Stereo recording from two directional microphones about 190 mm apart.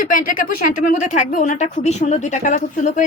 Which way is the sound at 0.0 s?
45° left (ahead or behind).